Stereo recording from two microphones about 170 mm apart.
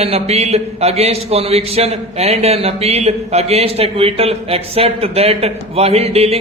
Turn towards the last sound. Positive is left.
turn(degrees=-35)  # may be behind; listen again after turning